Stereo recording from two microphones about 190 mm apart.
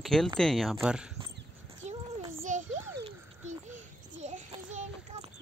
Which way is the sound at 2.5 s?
40° right (ahead or behind).